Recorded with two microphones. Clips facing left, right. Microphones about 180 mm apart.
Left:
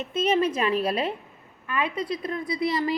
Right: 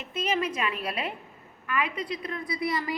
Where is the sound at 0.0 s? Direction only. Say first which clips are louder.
Left 6 dB; 25° left (ahead or behind).